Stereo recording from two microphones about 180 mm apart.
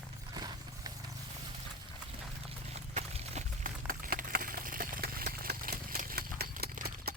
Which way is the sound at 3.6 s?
50° right (ahead or behind).